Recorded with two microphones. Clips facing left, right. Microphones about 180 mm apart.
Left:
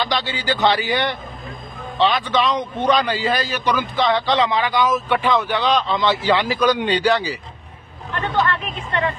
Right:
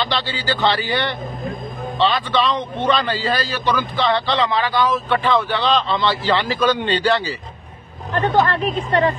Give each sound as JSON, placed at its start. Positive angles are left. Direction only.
{"t": 0.0, "sound": "a man's voice", "side_deg": 15}
{"t": 8.1, "sound": "speech", "side_deg": -40}